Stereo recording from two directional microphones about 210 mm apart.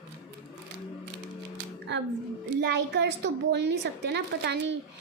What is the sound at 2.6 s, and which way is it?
A woman's voice, 55° right (ahead or behind).